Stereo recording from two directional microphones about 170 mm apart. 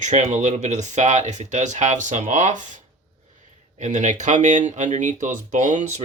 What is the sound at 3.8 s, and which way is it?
Speech, 45° right (ahead or behind).